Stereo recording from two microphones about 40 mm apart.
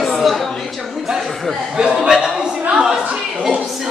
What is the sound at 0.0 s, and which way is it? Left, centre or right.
Chatter, centre.